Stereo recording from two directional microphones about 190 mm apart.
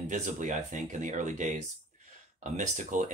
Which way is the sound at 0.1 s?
40° right (ahead or behind).